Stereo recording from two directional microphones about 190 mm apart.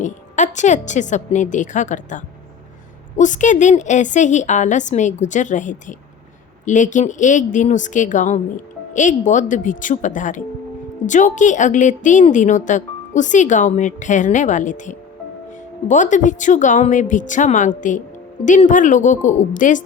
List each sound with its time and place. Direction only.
0.0 s speech: 40° left (ahead or behind)